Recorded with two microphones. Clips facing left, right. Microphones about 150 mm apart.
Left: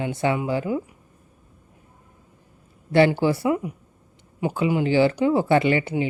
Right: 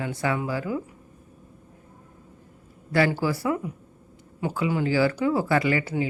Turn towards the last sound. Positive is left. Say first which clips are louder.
# left 3 dB
turn(degrees=20)  # may be behind; listen again after turning